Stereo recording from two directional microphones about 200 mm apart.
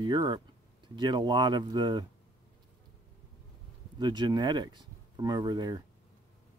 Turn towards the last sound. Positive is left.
turn(degrees=-20)  # may be behind; listen again after turning